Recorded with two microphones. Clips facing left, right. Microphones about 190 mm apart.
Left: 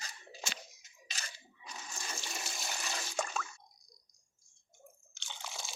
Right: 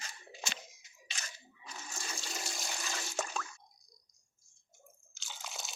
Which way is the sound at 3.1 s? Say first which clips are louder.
Left 1 dB; centre (ahead or behind).